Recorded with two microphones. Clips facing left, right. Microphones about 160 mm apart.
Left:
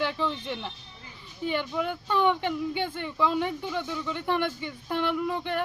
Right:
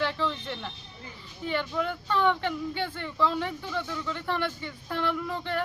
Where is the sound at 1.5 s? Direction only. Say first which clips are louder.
Left 1 dB; 15° left (ahead or behind).